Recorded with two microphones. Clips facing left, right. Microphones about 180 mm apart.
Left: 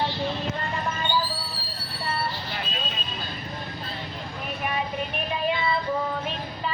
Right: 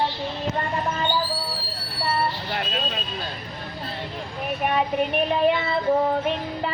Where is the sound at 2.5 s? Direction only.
60° right (ahead or behind).